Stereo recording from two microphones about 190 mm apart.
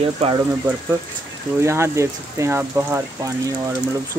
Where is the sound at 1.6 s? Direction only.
15° right (ahead or behind).